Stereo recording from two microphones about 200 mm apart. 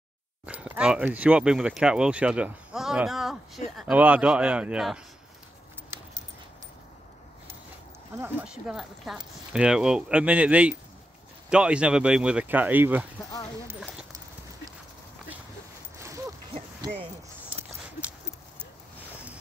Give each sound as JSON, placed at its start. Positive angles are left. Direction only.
{"t": 0.5, "sound": "speech", "side_deg": -5}
{"t": 8.2, "sound": "speech", "side_deg": -5}
{"t": 13.2, "sound": "speech", "side_deg": 15}
{"t": 13.7, "sound": "a sound", "side_deg": -5}